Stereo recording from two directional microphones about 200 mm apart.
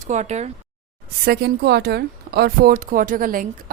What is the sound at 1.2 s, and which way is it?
Speech, 50° right (ahead or behind).